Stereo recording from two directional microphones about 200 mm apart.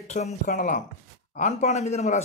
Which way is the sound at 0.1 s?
35° left (ahead or behind).